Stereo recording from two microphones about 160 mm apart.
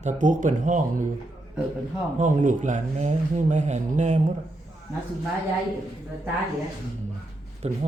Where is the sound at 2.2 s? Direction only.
50° right (ahead or behind).